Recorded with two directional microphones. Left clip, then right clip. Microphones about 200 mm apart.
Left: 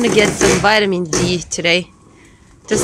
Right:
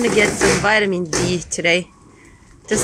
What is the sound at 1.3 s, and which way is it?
Speech, centre (ahead or behind).